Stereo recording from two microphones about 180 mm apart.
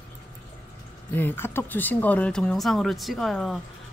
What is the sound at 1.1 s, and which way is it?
Speech, 10° left (ahead or behind).